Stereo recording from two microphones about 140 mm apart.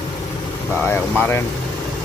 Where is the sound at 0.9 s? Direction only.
15° left (ahead or behind).